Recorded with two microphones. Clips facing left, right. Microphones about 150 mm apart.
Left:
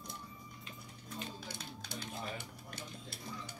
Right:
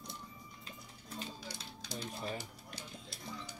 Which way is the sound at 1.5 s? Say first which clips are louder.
Even; 55° left (ahead or behind).